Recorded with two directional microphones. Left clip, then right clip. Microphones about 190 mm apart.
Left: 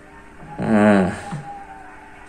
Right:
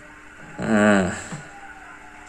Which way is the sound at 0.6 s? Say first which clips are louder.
Left 2 dB; 5° right (ahead or behind).